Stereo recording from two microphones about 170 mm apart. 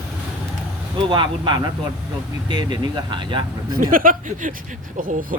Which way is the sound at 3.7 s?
55° right (ahead or behind).